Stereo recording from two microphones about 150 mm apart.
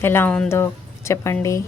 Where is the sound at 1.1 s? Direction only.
20° left (ahead or behind).